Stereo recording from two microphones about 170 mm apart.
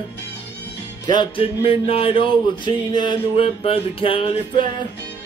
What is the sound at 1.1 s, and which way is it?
Speech, 30° left (ahead or behind).